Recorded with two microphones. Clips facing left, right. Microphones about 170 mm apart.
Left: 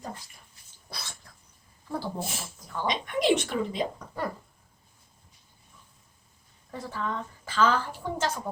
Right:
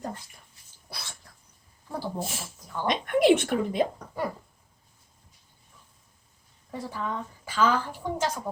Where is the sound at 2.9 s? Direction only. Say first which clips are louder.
Right 4 dB; 55° right (ahead or behind).